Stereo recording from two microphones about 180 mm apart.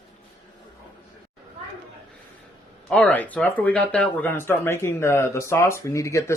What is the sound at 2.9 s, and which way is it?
Speech, 5° left (ahead or behind).